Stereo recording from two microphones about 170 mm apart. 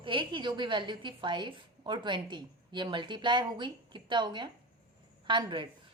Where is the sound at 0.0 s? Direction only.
30° right (ahead or behind).